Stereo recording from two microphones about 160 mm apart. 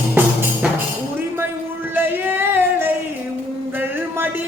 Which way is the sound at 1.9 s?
10° right (ahead or behind).